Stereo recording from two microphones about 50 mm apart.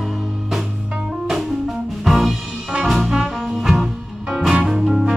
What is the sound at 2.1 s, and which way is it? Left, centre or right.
Music, centre.